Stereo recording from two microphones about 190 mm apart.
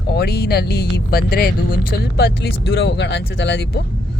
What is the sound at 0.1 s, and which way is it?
Speech, 55° left (ahead or behind).